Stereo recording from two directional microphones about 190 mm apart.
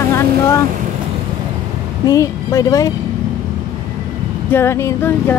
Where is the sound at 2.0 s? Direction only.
20° left (ahead or behind).